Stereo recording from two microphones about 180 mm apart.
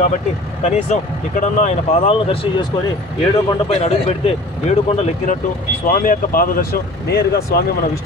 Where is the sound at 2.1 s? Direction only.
30° left (ahead or behind).